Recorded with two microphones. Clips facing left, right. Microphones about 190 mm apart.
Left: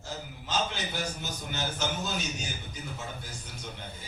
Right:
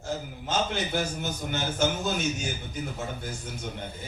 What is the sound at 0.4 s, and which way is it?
Speech, 50° right (ahead or behind).